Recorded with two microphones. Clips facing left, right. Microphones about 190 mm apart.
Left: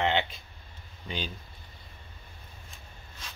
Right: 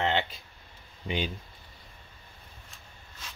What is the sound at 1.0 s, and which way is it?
Speech, 15° right (ahead or behind).